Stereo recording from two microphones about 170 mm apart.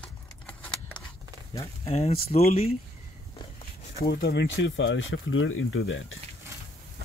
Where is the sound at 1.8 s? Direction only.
40° left (ahead or behind).